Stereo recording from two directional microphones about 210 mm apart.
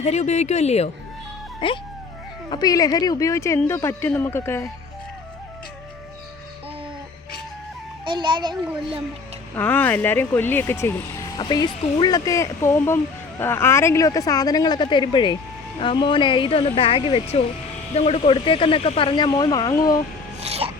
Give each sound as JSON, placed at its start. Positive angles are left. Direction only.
{"t": 0.0, "sound": "speech", "side_deg": 30}
{"t": 8.0, "sound": "a child's voice", "side_deg": -25}
{"t": 9.6, "sound": "speech", "side_deg": 10}
{"t": 20.4, "sound": "a sound", "side_deg": -30}